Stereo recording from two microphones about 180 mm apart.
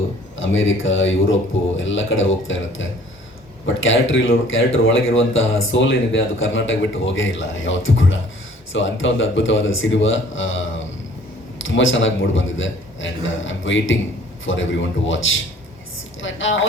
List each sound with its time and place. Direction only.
0.3 s speech: 90° left
11.6 s speech: 90° left